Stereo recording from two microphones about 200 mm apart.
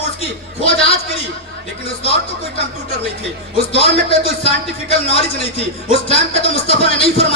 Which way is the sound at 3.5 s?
30° left (ahead or behind).